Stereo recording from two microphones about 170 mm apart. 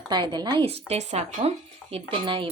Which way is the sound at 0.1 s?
25° right (ahead or behind).